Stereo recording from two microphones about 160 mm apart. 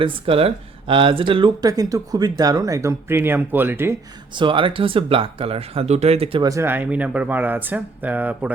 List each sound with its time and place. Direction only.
0.0 s speech: 35° right (ahead or behind); by 3.9 s 15° right (ahead or behind)
4.4 s speech: 30° right (ahead or behind)
6.4 s speech: 20° right (ahead or behind)